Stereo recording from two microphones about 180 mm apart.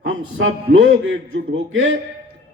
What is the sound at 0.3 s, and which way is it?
A man's voice, 90° right.